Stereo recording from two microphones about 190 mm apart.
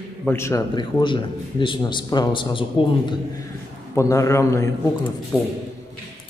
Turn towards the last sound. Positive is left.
turn(degrees=0)  # may be behind; listen again after turning